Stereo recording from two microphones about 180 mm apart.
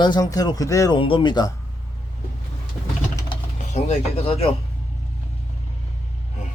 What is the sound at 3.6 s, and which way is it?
Speech, 40° left (ahead or behind).